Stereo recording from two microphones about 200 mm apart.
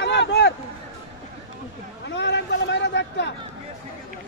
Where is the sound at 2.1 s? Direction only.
60° left (ahead or behind).